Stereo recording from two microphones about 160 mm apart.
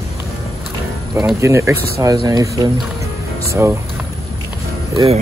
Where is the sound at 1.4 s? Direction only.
15° right (ahead or behind).